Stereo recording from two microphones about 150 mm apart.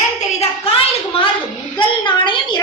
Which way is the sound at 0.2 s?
40° left (ahead or behind).